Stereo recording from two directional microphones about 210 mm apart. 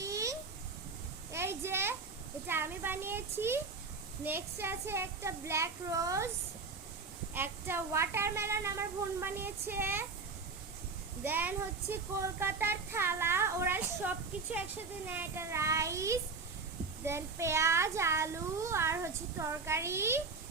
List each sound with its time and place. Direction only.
0.0 s a sound: 15° right (ahead or behind)
2.5 s a child's voice: 10° right (ahead or behind)
7.3 s a child's voice: 10° right (ahead or behind)
11.2 s a child's voice: 10° right (ahead or behind)